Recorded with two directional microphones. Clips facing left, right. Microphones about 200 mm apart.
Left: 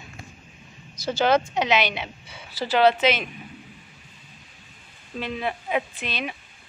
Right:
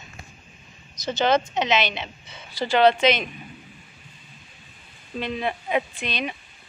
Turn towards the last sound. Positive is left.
turn(degrees=5)  # may be behind; listen again after turning